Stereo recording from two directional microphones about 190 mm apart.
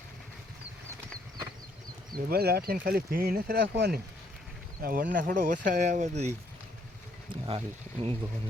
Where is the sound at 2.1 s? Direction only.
50° right (ahead or behind); by 8.1 s 30° right (ahead or behind).